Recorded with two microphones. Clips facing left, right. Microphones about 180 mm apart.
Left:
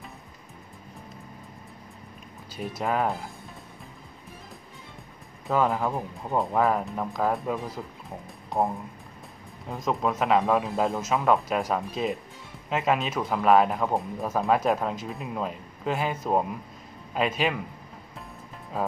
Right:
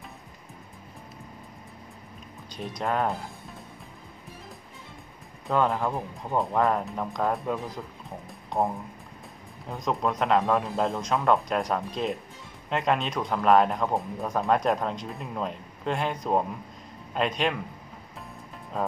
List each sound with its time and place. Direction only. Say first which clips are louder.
2.5 s speech: left 1 dB; 5° left (ahead or behind)
5.5 s speech: even; 5° left (ahead or behind)
18.7 s speech: even; 5° left (ahead or behind)